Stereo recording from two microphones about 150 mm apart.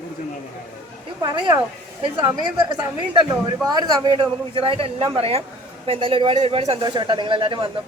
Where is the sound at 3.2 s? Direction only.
25° right (ahead or behind); by 6.8 s 40° right (ahead or behind).